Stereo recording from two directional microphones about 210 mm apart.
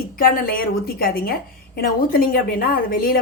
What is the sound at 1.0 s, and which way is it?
A woman's voice, 45° left (ahead or behind).